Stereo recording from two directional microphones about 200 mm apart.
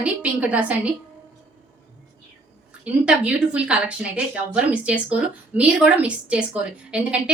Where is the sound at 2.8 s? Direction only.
5° right (ahead or behind).